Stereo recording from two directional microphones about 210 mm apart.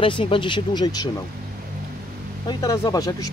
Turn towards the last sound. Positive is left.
turn(degrees=15)  # may be behind; listen again after turning